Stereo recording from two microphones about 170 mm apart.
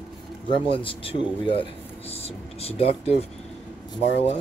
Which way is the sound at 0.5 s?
30° left (ahead or behind).